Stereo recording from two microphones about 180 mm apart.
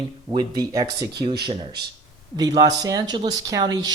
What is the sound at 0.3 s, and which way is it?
Speech, 20° right (ahead or behind).